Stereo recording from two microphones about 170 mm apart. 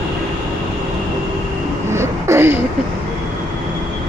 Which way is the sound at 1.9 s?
15° right (ahead or behind).